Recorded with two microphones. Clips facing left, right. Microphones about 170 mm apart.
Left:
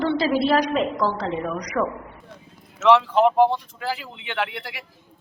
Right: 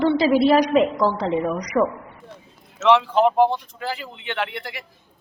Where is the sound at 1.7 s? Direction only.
20° right (ahead or behind).